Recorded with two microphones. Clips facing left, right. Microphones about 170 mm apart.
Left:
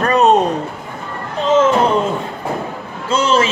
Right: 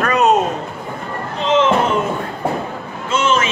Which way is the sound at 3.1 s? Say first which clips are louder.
Left 2 dB; 35° left (ahead or behind).